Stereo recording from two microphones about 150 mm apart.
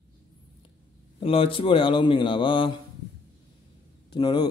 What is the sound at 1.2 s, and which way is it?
Speech, 40° left (ahead or behind).